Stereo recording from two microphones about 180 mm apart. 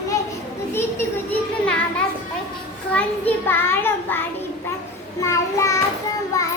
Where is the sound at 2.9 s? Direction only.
10° left (ahead or behind).